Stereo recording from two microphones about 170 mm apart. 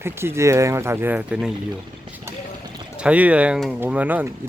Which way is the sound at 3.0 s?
10° right (ahead or behind).